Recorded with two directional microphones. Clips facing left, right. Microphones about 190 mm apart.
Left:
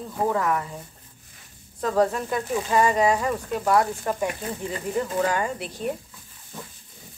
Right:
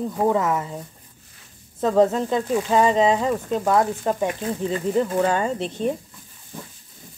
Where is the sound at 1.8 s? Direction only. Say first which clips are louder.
Right 4 dB; 20° right (ahead or behind).